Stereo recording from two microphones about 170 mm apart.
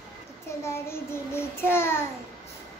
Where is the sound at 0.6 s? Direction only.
15° left (ahead or behind).